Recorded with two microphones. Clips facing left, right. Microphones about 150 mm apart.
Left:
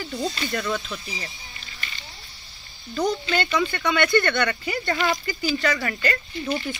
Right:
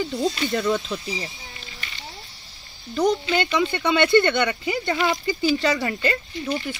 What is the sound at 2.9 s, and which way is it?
Speech, 20° right (ahead or behind).